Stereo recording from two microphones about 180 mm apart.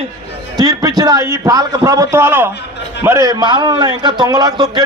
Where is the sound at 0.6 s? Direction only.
20° right (ahead or behind).